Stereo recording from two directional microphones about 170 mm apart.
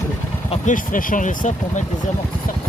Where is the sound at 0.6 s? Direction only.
50° left (ahead or behind).